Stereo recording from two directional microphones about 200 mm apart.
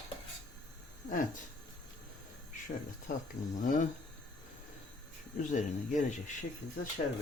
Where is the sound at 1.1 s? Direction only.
40° left (ahead or behind).